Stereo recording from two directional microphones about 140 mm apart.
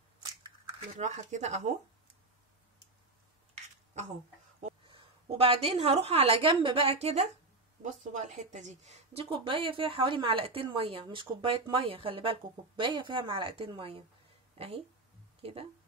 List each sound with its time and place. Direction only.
0.9 s a woman's voice: 60° right (ahead or behind)
4.8 s a woman's voice: 40° right (ahead or behind)
7.8 s a woman's voice: 60° right (ahead or behind)
9.2 s a woman's voice: 40° right (ahead or behind)
14.5 s a sound: 45° right (ahead or behind)
15.4 s a woman's voice: 45° right (ahead or behind)